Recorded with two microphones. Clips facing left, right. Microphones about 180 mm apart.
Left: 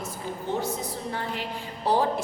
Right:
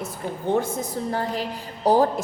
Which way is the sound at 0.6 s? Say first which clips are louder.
Right 3 dB; 45° right (ahead or behind).